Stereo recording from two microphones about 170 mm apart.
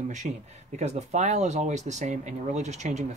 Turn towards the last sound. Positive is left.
turn(degrees=-40)  # may be behind; listen again after turning